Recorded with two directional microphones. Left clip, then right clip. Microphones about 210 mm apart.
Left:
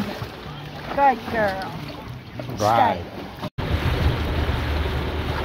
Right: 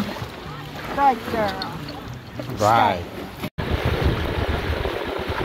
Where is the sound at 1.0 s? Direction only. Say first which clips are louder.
Left 1 dB; 20° left (ahead or behind).